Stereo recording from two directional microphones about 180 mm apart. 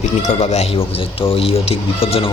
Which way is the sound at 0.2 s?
40° left (ahead or behind).